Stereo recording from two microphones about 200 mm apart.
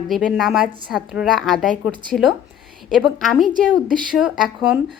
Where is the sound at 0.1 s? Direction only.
Centre (ahead or behind).